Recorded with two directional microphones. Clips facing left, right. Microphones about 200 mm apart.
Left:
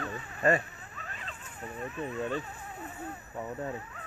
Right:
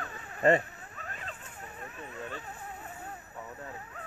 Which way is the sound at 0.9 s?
45° right (ahead or behind).